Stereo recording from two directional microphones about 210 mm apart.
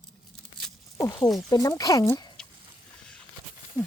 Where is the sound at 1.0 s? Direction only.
15° left (ahead or behind).